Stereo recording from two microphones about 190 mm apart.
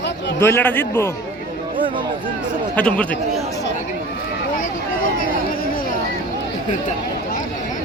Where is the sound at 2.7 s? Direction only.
5° left (ahead or behind).